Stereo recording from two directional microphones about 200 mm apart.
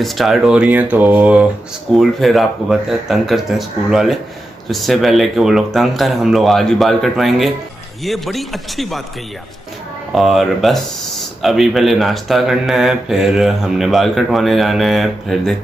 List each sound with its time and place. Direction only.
0.0 s speech: centre (ahead or behind)
10.1 s speech: centre (ahead or behind)